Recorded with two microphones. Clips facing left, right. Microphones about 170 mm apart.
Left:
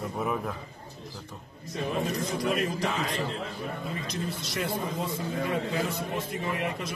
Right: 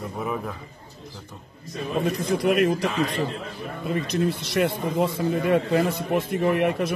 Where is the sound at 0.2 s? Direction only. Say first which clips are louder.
Right 1 dB; centre (ahead or behind).